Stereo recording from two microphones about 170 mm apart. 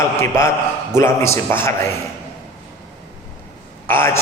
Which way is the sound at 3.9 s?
15° left (ahead or behind).